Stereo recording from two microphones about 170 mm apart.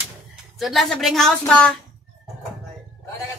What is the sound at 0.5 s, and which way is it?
A woman's voice, centre (ahead or behind).